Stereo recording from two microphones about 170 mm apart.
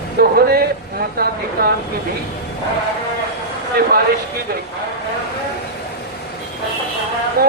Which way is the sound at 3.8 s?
65° right (ahead or behind).